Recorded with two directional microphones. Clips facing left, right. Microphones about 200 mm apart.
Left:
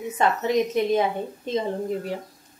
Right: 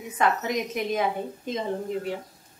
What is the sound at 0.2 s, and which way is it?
Speech, 30° left (ahead or behind).